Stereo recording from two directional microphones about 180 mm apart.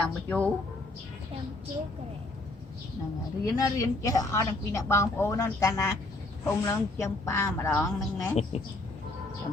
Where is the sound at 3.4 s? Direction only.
20° left (ahead or behind).